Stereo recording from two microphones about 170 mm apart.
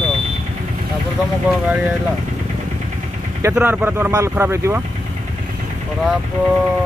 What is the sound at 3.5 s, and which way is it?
Speech, 10° right (ahead or behind).